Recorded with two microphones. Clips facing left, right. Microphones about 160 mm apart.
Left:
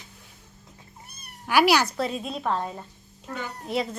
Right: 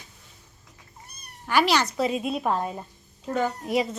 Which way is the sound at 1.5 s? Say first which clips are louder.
Left 2 dB; 10° left (ahead or behind).